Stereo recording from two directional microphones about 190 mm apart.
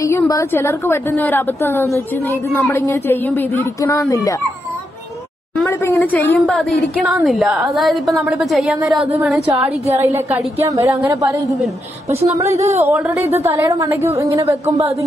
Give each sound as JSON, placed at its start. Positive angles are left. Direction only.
{"t": 0.0, "sound": "a woman's voice", "side_deg": 15}
{"t": 5.6, "sound": "a woman's voice", "side_deg": 10}
{"t": 9.9, "sound": "a woman's voice", "side_deg": -15}
{"t": 12.5, "sound": "a woman's voice", "side_deg": -35}
{"t": 13.1, "sound": "a woman's voice", "side_deg": -15}